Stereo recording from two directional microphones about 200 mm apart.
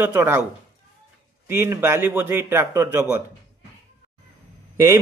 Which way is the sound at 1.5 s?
10° right (ahead or behind).